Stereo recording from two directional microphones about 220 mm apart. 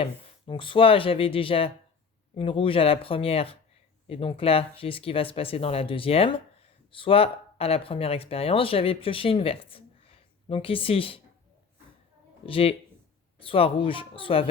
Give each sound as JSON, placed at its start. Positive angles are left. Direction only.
{"t": 0.0, "sound": "speech", "side_deg": 25}
{"t": 12.5, "sound": "speech", "side_deg": 25}